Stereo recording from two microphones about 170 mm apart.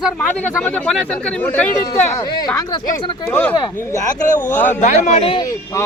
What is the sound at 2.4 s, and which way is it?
Speech, 20° left (ahead or behind).